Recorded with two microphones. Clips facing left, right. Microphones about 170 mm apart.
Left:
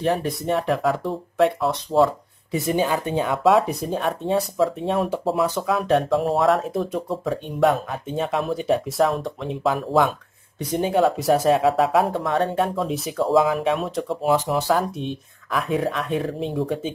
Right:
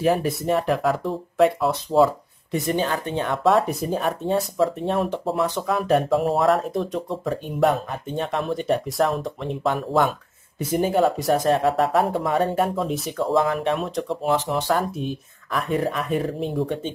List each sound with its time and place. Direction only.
0.0 s speech: 5° right (ahead or behind)